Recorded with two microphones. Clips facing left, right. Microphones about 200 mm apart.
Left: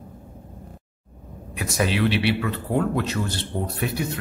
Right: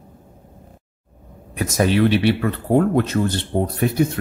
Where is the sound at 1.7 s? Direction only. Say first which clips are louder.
Right 6 dB; 45° right (ahead or behind).